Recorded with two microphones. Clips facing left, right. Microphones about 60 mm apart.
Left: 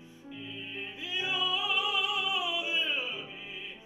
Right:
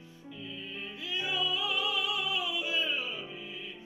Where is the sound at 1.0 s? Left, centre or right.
Centre.